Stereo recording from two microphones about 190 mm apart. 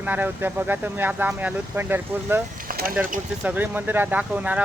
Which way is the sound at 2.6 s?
50° right (ahead or behind).